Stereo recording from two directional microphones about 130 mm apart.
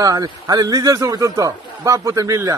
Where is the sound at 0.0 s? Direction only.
30° right (ahead or behind).